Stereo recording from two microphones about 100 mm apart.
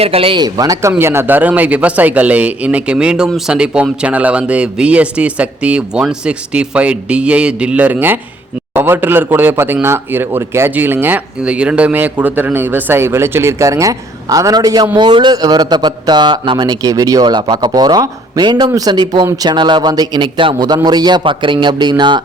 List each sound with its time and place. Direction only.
0.0 s speech: 75° right (ahead or behind)
0.3 s speech: 40° right (ahead or behind)
14.9 s speech: 50° right (ahead or behind)